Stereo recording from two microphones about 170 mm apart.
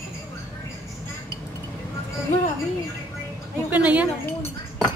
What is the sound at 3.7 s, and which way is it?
Speech, 10° right (ahead or behind).